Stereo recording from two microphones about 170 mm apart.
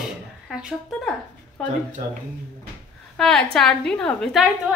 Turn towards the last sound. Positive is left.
turn(degrees=0)  # may be behind; listen again after turning